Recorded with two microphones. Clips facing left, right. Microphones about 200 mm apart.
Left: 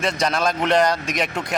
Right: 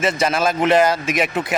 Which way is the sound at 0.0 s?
5° right (ahead or behind).